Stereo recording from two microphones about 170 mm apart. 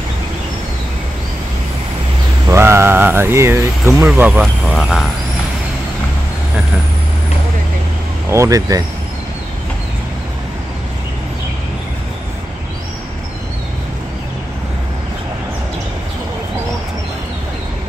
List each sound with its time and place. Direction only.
2.4 s speech: 15° right (ahead or behind)
3.8 s speech: 5° right (ahead or behind)
8.3 s speech: 20° right (ahead or behind)